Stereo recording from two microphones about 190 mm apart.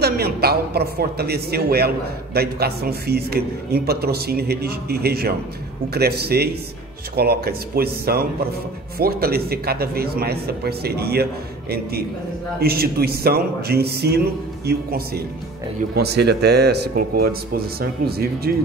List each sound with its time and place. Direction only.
0.0 s a man's voice: 55° right (ahead or behind)
12.5 s a man's voice: 55° right (ahead or behind)